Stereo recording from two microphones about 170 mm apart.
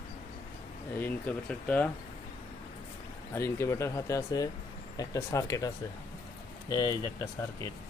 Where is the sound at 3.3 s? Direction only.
15° left (ahead or behind).